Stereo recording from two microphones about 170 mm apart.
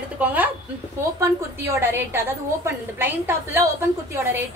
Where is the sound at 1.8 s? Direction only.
15° right (ahead or behind).